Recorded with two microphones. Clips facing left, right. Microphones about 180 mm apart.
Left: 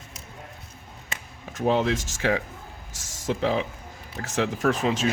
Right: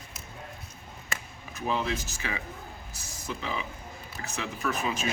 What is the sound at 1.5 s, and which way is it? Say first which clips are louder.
Speech: left 7 dB; 90° left.